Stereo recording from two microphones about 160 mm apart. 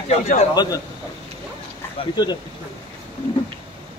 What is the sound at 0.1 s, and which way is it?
Speech, 45° left (ahead or behind).